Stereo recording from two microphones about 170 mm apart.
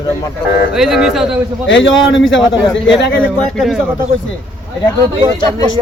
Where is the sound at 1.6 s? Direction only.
90° left.